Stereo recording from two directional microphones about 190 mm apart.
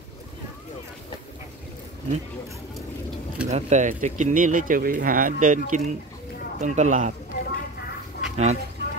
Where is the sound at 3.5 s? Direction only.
40° right (ahead or behind).